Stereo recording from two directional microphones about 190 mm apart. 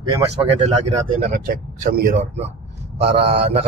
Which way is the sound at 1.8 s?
45° right (ahead or behind).